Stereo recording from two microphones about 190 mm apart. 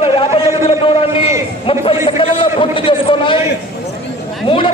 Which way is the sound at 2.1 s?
30° left (ahead or behind).